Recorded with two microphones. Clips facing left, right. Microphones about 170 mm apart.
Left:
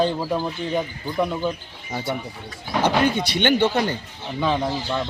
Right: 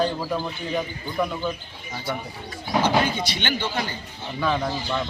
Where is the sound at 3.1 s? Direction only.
55° left (ahead or behind).